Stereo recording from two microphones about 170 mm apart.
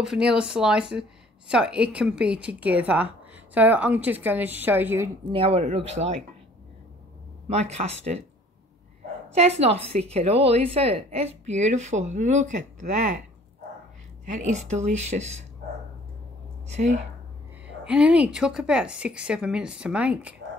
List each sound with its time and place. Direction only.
0.0 s a woman's voice: 5° right (ahead or behind)
5.3 s a woman's voice: 35° right (ahead or behind)
7.4 s a woman's voice: 40° right (ahead or behind)
9.6 s a woman's voice: 35° right (ahead or behind)
14.2 s a woman's voice: 45° right (ahead or behind)
16.6 s speech: 40° right (ahead or behind)
17.8 s a woman's voice: 5° right (ahead or behind)